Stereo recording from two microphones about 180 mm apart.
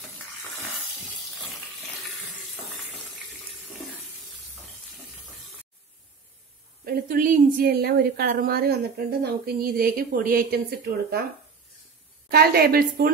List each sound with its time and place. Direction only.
6.8 s a woman's voice: 55° right (ahead or behind)
12.3 s a woman's voice: 60° right (ahead or behind)